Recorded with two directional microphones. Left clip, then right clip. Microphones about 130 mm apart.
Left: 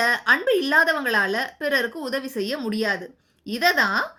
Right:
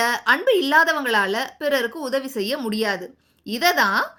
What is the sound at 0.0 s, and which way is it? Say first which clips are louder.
A woman's voice: right 1 dB; 30° right (ahead or behind).